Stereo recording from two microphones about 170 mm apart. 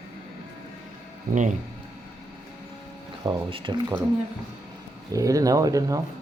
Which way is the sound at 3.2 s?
30° right (ahead or behind).